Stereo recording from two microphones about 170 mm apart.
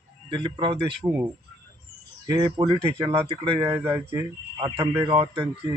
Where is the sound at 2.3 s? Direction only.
30° right (ahead or behind); by 4.2 s 10° right (ahead or behind).